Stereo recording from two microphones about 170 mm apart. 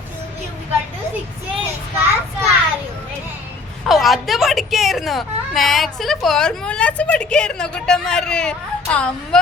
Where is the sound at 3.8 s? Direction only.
Centre (ahead or behind).